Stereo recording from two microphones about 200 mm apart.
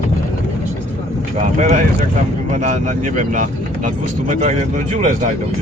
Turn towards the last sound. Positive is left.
turn(degrees=-40)  # may be behind; listen again after turning